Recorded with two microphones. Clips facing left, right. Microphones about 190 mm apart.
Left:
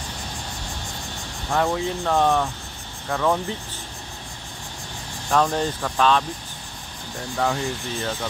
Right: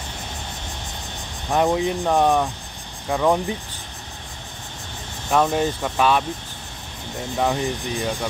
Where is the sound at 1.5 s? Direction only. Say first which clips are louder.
Right 3 dB; 15° right (ahead or behind).